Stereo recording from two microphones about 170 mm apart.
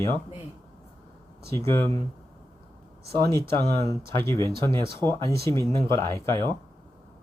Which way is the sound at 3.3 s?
15° left (ahead or behind).